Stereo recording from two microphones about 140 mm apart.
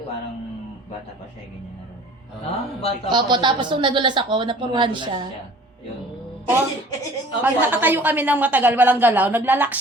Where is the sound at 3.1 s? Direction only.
35° right (ahead or behind).